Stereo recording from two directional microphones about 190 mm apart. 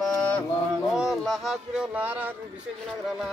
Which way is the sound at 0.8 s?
Centre (ahead or behind).